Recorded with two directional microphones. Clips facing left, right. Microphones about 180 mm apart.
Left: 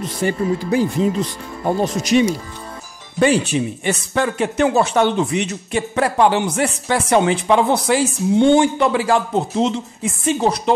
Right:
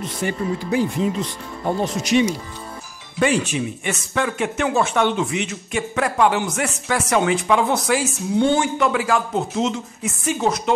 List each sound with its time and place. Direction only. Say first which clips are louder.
0.0 s speech: left 4 dB; 35° left (ahead or behind)
2.0 s speech: left 2 dB; 40° left (ahead or behind)